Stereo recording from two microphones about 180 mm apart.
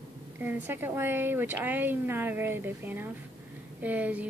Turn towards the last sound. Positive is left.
turn(degrees=-10)  # may be behind; listen again after turning